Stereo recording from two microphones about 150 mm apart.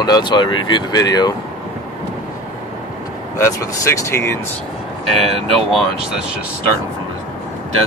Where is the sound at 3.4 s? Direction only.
20° left (ahead or behind).